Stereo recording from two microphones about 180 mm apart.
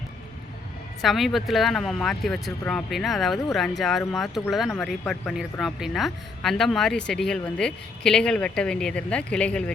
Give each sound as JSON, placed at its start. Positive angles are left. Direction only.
{"t": 1.0, "sound": "speech", "side_deg": 0}